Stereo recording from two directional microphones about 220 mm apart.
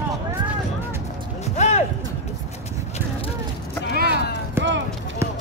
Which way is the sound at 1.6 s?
30° left (ahead or behind).